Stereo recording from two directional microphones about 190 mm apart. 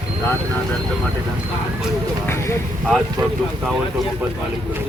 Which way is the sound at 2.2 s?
15° left (ahead or behind).